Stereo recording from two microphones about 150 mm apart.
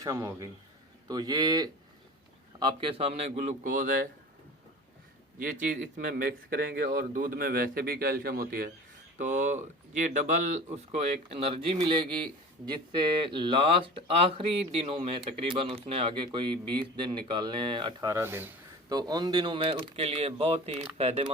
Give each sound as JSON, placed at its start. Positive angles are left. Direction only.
{"t": 0.0, "sound": "a man's voice", "side_deg": -20}
{"t": 5.4, "sound": "a man's voice", "side_deg": -65}
{"t": 9.1, "sound": "speech", "side_deg": -55}
{"t": 18.1, "sound": "speech", "side_deg": -15}
{"t": 18.9, "sound": "a man's voice", "side_deg": -25}